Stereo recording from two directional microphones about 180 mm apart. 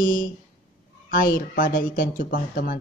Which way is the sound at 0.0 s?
50° left (ahead or behind).